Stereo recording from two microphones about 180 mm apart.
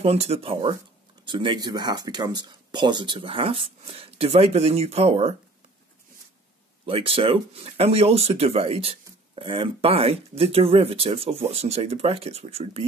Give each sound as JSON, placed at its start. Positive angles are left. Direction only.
{"t": 0.0, "sound": "speech", "side_deg": -35}
{"t": 6.9, "sound": "speech", "side_deg": -30}